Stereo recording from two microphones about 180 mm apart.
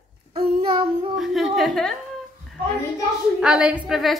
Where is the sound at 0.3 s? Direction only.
30° right (ahead or behind).